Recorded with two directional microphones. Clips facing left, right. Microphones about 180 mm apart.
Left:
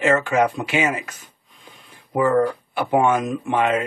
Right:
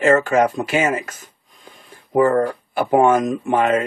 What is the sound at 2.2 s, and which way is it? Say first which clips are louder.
Speech: right 2 dB; 45° right (ahead or behind).